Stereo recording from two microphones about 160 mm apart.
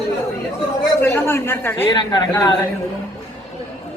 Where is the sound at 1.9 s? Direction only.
25° left (ahead or behind).